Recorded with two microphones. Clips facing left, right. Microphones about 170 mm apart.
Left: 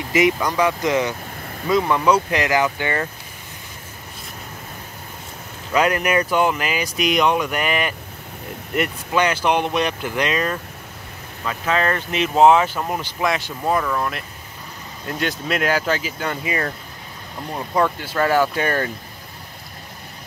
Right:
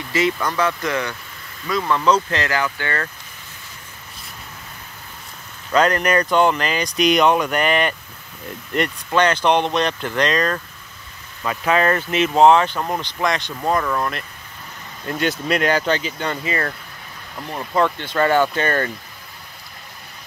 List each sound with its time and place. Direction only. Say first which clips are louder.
0.1 s speech: left 3 dB; 15° left (ahead or behind)
1.4 s vehicle: left 7 dB; 50° left (ahead or behind)
1.7 s speech: left 1 dB; 15° left (ahead or behind)
5.7 s speech: right 2 dB; 10° left (ahead or behind)
12.1 s speech: even; 5° left (ahead or behind)